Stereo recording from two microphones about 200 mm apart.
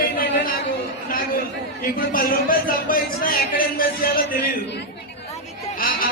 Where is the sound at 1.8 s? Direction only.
45° left (ahead or behind).